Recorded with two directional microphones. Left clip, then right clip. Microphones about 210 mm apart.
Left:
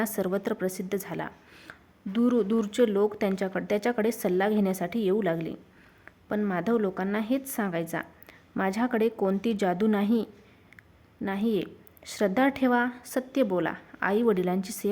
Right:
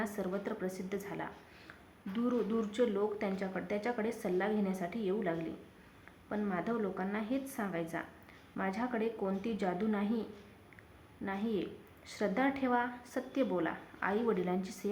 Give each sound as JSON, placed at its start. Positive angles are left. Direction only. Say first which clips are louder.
{"t": 0.0, "sound": "a woman's voice", "louder": "left 9 dB", "side_deg": 50}